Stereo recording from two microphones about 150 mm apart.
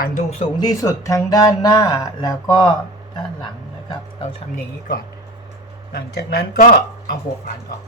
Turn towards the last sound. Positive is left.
turn(degrees=65)  # may be behind; listen again after turning